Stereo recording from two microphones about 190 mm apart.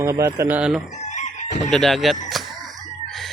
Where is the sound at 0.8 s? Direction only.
40° left (ahead or behind).